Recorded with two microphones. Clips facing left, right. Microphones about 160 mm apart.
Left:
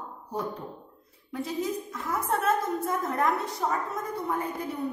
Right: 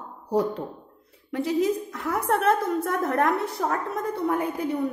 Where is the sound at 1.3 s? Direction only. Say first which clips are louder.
Right 7 dB; 70° right (ahead or behind).